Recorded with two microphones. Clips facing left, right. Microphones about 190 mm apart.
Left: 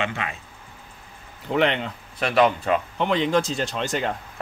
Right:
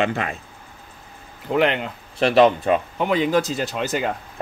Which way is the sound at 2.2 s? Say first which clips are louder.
Right 5 dB; 25° right (ahead or behind).